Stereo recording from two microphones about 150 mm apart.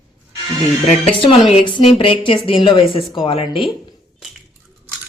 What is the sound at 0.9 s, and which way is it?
Speech, 40° left (ahead or behind).